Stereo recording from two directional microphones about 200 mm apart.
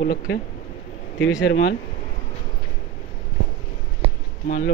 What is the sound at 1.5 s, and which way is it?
Speech, 65° left (ahead or behind).